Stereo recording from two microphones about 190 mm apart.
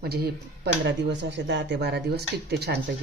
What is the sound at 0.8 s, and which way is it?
Speech, 65° right (ahead or behind).